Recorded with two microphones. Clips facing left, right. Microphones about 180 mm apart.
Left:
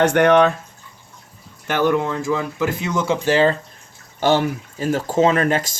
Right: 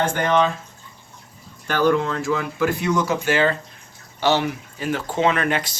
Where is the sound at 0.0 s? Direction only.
70° left (ahead or behind).